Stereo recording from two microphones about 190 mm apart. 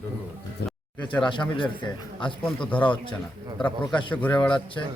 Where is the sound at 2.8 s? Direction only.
25° left (ahead or behind).